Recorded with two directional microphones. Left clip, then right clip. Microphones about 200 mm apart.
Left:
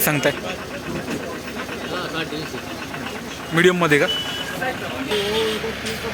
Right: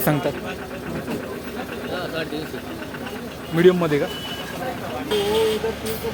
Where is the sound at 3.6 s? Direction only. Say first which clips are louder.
Left 1 dB; 10° left (ahead or behind).